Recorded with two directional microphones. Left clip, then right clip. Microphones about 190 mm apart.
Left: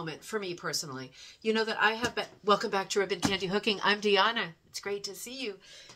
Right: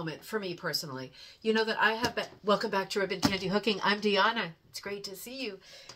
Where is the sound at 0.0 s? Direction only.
25° left (ahead or behind).